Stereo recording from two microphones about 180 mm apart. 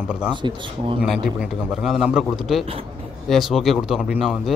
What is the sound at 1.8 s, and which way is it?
Speech, centre (ahead or behind).